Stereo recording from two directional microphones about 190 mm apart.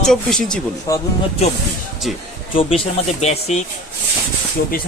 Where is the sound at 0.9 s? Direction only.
20° left (ahead or behind).